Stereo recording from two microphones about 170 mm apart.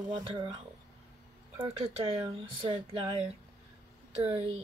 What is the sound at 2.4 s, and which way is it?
Speech, 30° right (ahead or behind).